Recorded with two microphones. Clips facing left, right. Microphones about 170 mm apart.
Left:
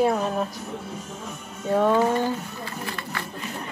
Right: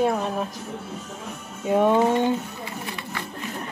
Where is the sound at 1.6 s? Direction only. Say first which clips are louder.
Right 1 dB; 15° right (ahead or behind).